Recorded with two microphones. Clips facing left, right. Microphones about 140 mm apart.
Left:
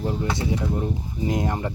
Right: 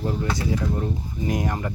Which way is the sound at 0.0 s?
20° left (ahead or behind).